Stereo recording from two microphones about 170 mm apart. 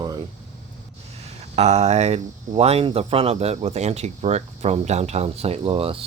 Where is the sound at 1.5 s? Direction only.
40° right (ahead or behind).